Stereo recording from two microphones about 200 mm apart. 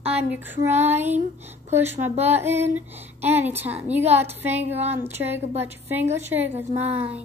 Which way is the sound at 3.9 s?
10° right (ahead or behind).